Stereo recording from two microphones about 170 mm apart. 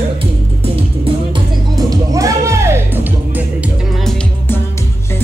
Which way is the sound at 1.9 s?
20° right (ahead or behind).